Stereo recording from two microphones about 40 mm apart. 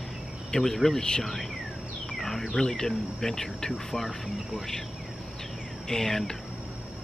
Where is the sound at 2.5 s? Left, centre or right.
Centre.